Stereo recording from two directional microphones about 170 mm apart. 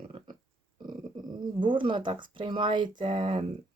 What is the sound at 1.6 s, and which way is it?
Speech, 30° right (ahead or behind).